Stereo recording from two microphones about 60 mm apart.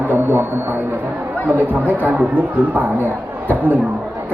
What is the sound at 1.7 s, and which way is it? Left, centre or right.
Speech, right.